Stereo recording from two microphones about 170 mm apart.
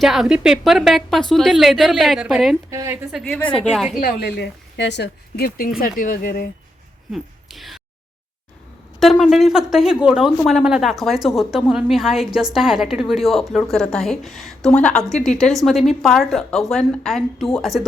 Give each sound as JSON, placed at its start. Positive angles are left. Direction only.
{"t": 0.0, "sound": "a woman's voice", "side_deg": 0}
{"t": 2.6, "sound": "a woman's voice", "side_deg": -15}
{"t": 3.1, "sound": "a woman's voice", "side_deg": 0}
{"t": 4.0, "sound": "speech", "side_deg": 70}
{"t": 7.1, "sound": "speech", "side_deg": 0}
{"t": 9.0, "sound": "a woman's voice", "side_deg": 0}